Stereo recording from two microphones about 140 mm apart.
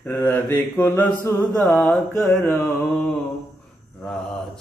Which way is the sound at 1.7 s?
Centre (ahead or behind).